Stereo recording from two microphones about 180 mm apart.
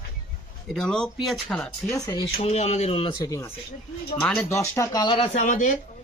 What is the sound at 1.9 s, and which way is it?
Speech, 20° left (ahead or behind).